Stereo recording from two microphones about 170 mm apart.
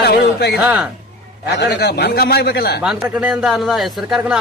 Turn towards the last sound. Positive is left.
turn(degrees=0)  # may be behind; listen again after turning